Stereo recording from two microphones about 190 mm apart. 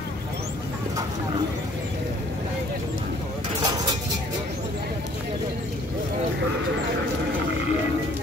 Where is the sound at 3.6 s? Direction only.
20° right (ahead or behind).